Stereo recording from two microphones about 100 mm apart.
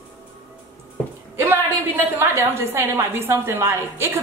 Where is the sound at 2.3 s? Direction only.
25° right (ahead or behind).